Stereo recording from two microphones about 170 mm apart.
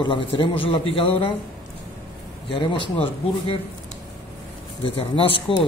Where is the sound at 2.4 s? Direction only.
30° left (ahead or behind).